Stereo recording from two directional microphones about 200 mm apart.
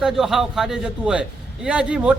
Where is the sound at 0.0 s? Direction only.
Centre (ahead or behind).